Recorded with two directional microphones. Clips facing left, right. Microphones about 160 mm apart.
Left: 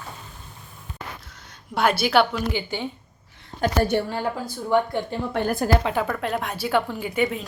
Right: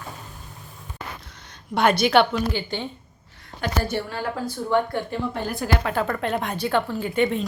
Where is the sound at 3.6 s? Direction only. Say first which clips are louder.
Left 4 dB; 40° left (ahead or behind).